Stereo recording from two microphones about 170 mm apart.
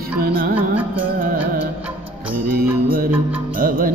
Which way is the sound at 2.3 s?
60° right (ahead or behind).